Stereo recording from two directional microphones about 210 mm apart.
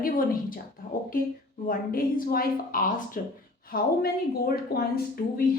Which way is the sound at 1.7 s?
45° left (ahead or behind).